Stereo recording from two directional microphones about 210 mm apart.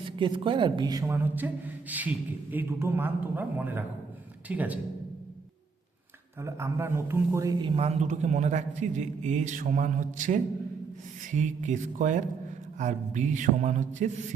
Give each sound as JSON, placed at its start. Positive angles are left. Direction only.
{"t": 0.2, "sound": "a man's voice", "side_deg": -25}
{"t": 6.4, "sound": "a man's voice", "side_deg": -10}